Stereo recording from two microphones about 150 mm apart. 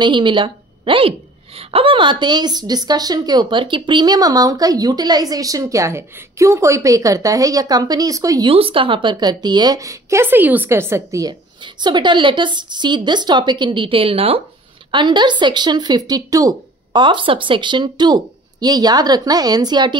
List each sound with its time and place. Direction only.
0.0 s a woman's voice: 30° right (ahead or behind)
8.5 s a woman's voice: 35° right (ahead or behind)